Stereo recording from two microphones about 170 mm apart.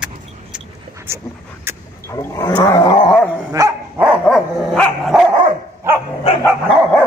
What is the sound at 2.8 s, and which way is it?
Dog, 30° left (ahead or behind).